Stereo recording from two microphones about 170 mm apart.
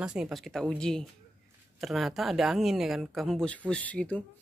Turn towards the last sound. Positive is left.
turn(degrees=5)  # may be behind; listen again after turning